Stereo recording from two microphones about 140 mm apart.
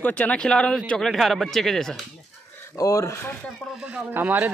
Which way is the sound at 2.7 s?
25° left (ahead or behind).